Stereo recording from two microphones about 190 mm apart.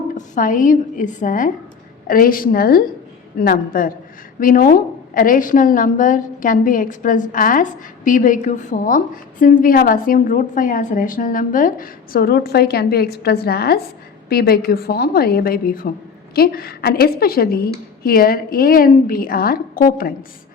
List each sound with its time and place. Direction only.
0.2 s a woman's voice: 45° left (ahead or behind)